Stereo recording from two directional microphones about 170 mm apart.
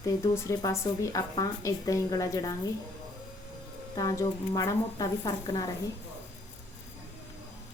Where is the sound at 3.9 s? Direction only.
25° left (ahead or behind).